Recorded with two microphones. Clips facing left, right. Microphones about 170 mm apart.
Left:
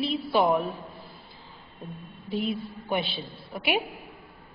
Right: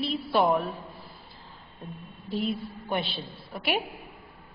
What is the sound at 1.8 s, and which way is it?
A woman's voice, centre (ahead or behind).